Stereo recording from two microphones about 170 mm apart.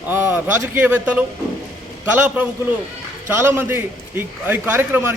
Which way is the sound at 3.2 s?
15° right (ahead or behind).